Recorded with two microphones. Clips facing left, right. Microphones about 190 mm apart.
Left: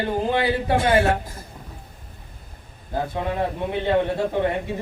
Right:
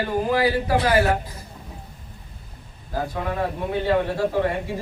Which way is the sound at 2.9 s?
20° left (ahead or behind).